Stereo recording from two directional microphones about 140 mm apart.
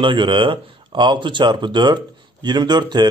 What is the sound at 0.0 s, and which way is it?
A man's voice, 35° right (ahead or behind).